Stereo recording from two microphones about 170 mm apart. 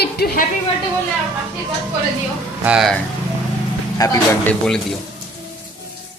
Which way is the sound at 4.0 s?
10° left (ahead or behind).